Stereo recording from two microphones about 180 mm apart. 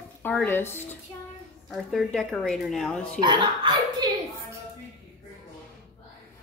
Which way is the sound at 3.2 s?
25° right (ahead or behind).